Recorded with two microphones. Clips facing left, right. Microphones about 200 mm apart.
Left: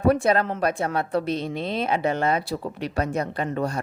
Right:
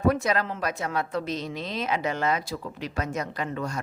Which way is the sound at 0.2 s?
55° left (ahead or behind).